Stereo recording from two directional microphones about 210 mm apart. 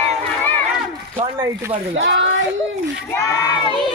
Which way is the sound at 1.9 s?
60° right (ahead or behind).